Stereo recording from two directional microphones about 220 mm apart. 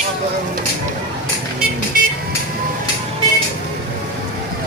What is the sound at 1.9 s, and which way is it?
Vehicle, 40° right (ahead or behind).